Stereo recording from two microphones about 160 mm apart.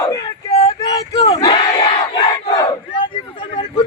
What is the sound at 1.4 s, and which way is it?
Battle cry, 25° left (ahead or behind).